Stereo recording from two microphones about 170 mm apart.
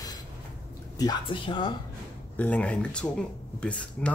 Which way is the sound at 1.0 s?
25° left (ahead or behind).